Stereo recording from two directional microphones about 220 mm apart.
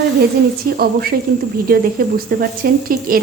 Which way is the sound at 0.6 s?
45° right (ahead or behind).